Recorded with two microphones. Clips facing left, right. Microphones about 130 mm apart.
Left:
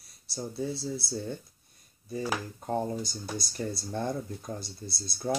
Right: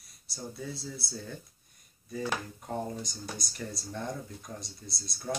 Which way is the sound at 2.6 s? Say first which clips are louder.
Left 5 dB; 30° left (ahead or behind).